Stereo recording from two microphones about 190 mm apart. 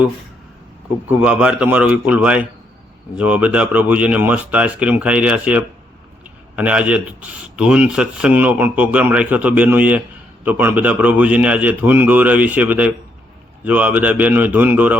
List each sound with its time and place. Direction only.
1.0 s speech: 5° right (ahead or behind)